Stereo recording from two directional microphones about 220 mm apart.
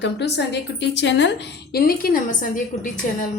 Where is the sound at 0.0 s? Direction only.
50° left (ahead or behind).